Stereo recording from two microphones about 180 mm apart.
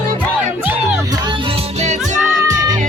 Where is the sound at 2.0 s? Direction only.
5° right (ahead or behind).